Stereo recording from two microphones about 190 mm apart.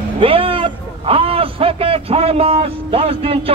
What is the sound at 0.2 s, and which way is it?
A man's voice, 30° right (ahead or behind).